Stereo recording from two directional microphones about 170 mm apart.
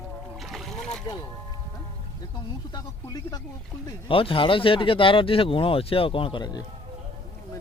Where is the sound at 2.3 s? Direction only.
25° left (ahead or behind).